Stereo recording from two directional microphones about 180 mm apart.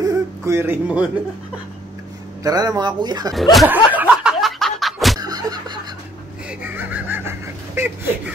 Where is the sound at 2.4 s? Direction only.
20° right (ahead or behind).